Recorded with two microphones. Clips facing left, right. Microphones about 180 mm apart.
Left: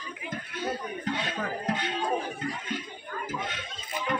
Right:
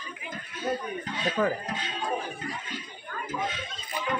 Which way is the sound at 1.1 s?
60° left (ahead or behind).